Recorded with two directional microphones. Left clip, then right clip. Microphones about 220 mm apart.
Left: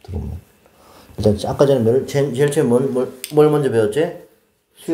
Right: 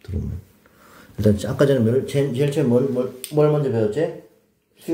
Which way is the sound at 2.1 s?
15° left (ahead or behind).